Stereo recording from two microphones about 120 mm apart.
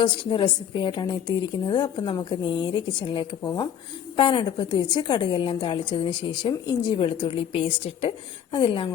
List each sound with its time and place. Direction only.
0.0 s a woman's voice: 40° left (ahead or behind)